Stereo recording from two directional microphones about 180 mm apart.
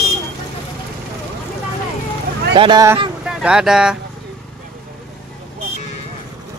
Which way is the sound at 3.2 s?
5° right (ahead or behind).